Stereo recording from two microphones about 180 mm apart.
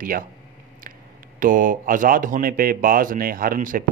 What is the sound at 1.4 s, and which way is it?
Speech, 50° right (ahead or behind).